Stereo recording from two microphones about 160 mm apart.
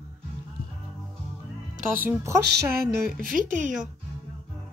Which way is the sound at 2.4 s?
80° right.